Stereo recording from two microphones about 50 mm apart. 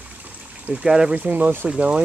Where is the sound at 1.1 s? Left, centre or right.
Right.